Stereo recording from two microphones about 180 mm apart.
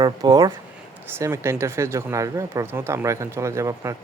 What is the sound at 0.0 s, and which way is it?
Speech, 20° right (ahead or behind).